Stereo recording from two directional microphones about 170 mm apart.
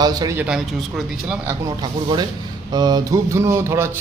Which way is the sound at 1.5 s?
20° right (ahead or behind).